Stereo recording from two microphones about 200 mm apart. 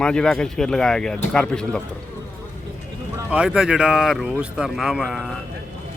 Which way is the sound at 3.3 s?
5° right (ahead or behind).